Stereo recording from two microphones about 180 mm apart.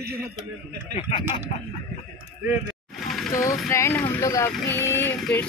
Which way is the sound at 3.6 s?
15° left (ahead or behind).